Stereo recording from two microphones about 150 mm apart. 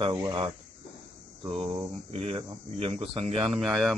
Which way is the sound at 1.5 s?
35° right (ahead or behind).